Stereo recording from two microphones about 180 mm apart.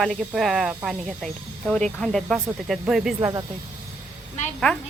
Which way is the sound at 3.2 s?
20° right (ahead or behind).